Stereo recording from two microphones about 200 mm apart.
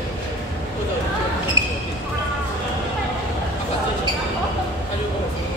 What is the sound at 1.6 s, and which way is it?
Basketball bounce, 15° right (ahead or behind).